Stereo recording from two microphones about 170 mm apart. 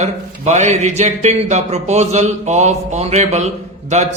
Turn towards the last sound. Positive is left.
turn(degrees=-40)  # may be behind; listen again after turning